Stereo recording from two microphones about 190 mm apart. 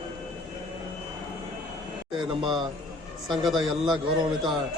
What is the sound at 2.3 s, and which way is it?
Speech, 25° right (ahead or behind).